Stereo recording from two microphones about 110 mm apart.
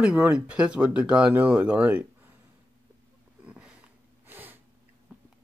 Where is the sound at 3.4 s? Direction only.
10° right (ahead or behind).